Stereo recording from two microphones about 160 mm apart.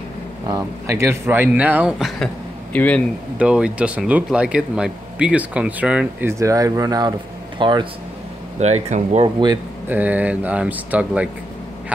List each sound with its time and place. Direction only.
0.5 s speech: 20° right (ahead or behind); by 2.2 s centre (ahead or behind)
2.7 s speech: 10° left (ahead or behind)
3.3 s speech: 5° right (ahead or behind)
6.3 s speech: 20° right (ahead or behind)
8.5 s speech: 45° right (ahead or behind)
9.8 s speech: 10° right (ahead or behind)